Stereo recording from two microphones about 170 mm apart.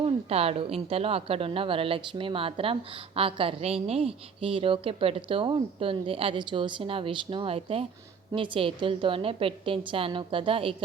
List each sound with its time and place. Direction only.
0.0 s a woman's voice: 35° right (ahead or behind)